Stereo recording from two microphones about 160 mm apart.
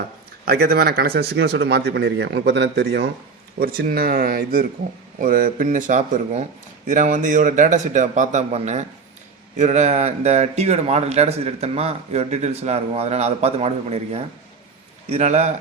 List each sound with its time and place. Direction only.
0.4 s speech: 80° right
3.6 s a man's voice: 65° right (ahead or behind); by 15.4 s 45° right (ahead or behind)